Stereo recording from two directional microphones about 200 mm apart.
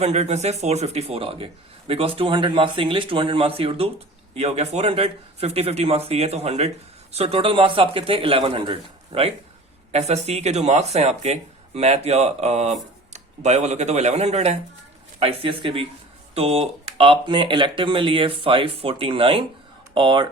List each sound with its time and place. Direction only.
0.0 s speech: 35° right (ahead or behind)